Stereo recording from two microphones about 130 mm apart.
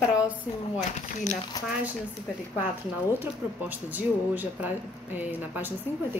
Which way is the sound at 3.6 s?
15° right (ahead or behind).